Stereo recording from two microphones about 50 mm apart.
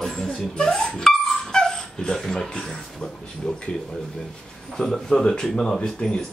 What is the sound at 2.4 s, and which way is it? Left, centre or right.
Speech, centre.